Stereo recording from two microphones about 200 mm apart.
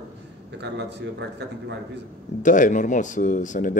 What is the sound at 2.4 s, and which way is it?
Speech, 40° left (ahead or behind).